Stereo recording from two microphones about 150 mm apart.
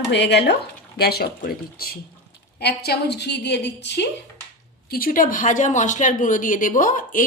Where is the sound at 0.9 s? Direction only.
90° left.